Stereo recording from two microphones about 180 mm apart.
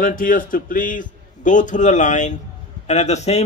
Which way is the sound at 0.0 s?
50° left (ahead or behind).